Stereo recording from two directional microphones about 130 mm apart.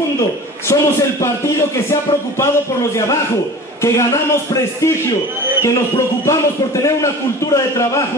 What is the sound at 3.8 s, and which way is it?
A man's voice, 25° left (ahead or behind).